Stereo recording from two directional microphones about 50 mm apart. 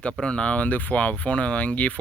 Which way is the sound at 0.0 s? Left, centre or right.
Left.